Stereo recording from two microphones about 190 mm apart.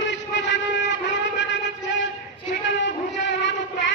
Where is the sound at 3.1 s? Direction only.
70° left (ahead or behind).